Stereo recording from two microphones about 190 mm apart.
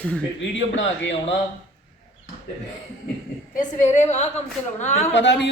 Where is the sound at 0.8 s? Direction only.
80° left.